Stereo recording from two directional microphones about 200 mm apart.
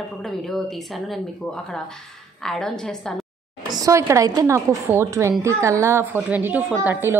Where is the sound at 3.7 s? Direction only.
15° right (ahead or behind).